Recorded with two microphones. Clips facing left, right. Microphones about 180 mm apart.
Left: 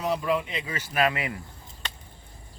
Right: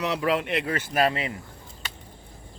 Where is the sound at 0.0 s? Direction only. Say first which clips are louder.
Right 1 dB; 75° right (ahead or behind).